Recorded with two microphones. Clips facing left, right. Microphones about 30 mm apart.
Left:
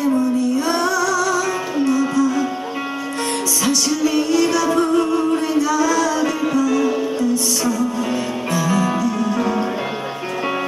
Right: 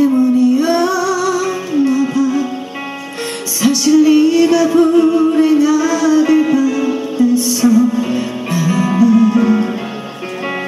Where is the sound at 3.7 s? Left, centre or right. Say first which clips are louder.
Right 11 dB; centre.